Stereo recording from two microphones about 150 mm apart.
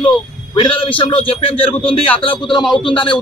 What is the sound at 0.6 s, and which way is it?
Speech, 35° left (ahead or behind).